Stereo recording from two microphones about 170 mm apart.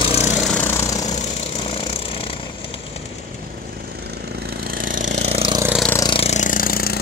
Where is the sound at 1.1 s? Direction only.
35° left (ahead or behind).